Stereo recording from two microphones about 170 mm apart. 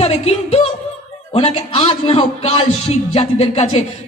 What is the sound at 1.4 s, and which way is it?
Speech, 35° left (ahead or behind).